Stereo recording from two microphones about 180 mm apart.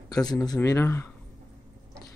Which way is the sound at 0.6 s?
15° left (ahead or behind).